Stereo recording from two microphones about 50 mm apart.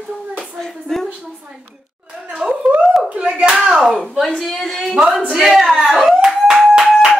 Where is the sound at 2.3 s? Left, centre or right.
Centre.